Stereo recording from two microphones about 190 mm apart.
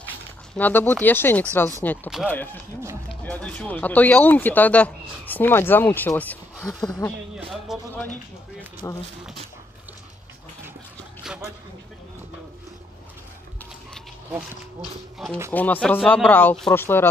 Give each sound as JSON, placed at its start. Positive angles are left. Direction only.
{"t": 0.6, "sound": "speech", "side_deg": 10}
{"t": 2.0, "sound": "speech", "side_deg": 0}
{"t": 7.3, "sound": "speech", "side_deg": -5}
{"t": 8.8, "sound": "speech", "side_deg": 15}
{"t": 11.3, "sound": "a sound", "side_deg": -5}
{"t": 15.2, "sound": "speech", "side_deg": 0}